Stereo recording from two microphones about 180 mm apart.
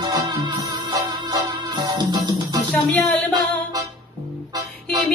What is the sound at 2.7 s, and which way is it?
Music, 5° left (ahead or behind).